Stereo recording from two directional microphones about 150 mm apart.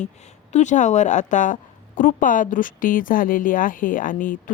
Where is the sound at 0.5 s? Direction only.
55° left (ahead or behind).